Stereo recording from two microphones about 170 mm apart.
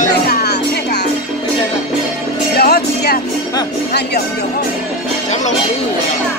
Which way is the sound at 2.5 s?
65° left (ahead or behind).